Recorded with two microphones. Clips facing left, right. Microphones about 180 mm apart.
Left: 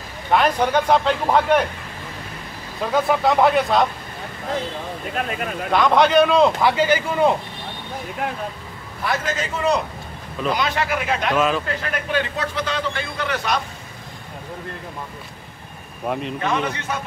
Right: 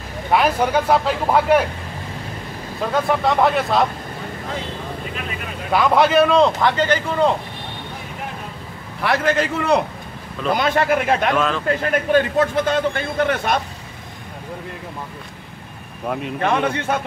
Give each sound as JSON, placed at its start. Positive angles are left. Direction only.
{"t": 0.3, "sound": "speech", "side_deg": -5}
{"t": 2.8, "sound": "a man's voice", "side_deg": 0}
{"t": 5.7, "sound": "a man's voice", "side_deg": -5}
{"t": 9.0, "sound": "a man's voice", "side_deg": -60}
{"t": 11.3, "sound": "speech", "side_deg": 5}
{"t": 11.8, "sound": "a man's voice", "side_deg": -45}
{"t": 16.1, "sound": "a man's voice", "side_deg": -5}
{"t": 16.3, "sound": "a man's voice", "side_deg": -55}